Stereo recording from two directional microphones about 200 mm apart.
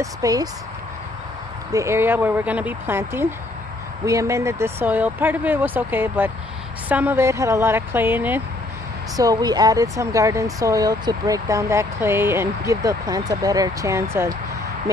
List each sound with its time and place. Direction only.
0.0 s speech: 15° right (ahead or behind)
1.7 s speech: 15° right (ahead or behind)